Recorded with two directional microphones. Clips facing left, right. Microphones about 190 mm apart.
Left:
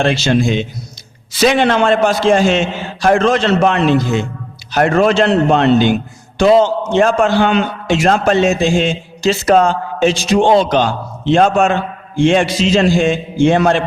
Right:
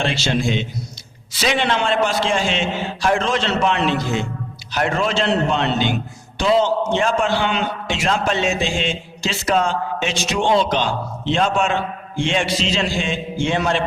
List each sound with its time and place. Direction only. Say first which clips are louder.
0.0 s a man's voice: left 7 dB; 50° left (ahead or behind)